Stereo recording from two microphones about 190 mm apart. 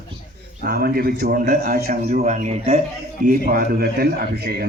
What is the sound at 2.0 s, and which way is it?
Speech, 40° right (ahead or behind).